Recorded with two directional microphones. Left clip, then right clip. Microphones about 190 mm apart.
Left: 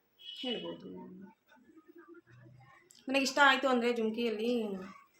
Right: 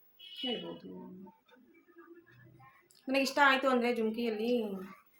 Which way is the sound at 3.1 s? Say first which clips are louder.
Left 1 dB; 10° left (ahead or behind).